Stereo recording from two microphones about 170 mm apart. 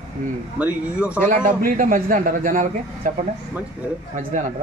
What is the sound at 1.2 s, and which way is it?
A man's voice, 50° right (ahead or behind).